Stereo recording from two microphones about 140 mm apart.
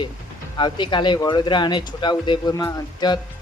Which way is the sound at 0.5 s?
35° left (ahead or behind).